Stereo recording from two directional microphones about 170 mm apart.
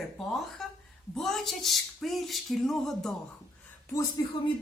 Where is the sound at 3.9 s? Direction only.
20° left (ahead or behind).